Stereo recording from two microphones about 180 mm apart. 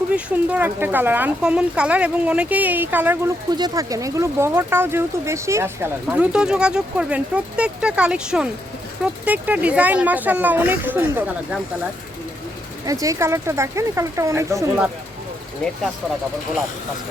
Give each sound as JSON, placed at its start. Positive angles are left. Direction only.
{"t": 0.1, "sound": "speech", "side_deg": -5}
{"t": 3.5, "sound": "speech", "side_deg": -20}
{"t": 12.8, "sound": "speech", "side_deg": -20}
{"t": 15.6, "sound": "speech", "side_deg": 5}